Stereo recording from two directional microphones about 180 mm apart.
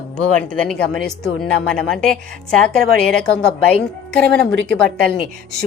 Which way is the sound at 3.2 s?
5° left (ahead or behind).